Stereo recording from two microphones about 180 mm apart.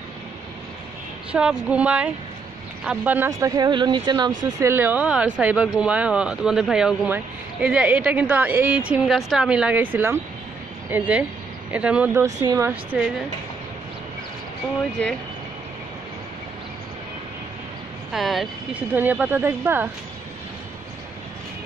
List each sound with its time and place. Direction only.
1.3 s speech: 5° right (ahead or behind); by 4.3 s 25° right (ahead or behind)
4.6 s speech: 15° right (ahead or behind)
15.0 s speech: 5° left (ahead or behind)
18.1 s speech: centre (ahead or behind)